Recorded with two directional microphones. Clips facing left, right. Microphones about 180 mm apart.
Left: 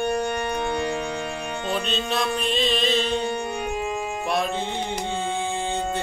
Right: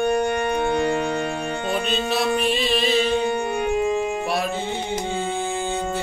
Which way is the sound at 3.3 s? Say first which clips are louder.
Right 5 dB; 55° right (ahead or behind).